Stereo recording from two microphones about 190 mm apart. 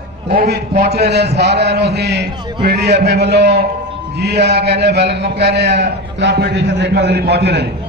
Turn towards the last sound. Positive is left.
turn(degrees=-60)  # may be behind; listen again after turning